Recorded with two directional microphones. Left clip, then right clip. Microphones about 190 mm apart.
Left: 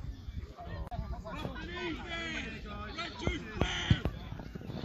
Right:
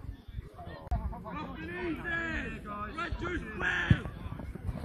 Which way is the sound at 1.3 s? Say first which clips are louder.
Right 1 dB; 30° left (ahead or behind).